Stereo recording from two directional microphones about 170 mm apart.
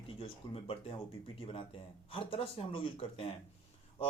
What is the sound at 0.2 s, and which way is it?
Speech, 35° left (ahead or behind).